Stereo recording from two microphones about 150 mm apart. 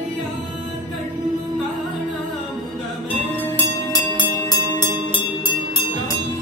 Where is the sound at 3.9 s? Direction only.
30° left (ahead or behind).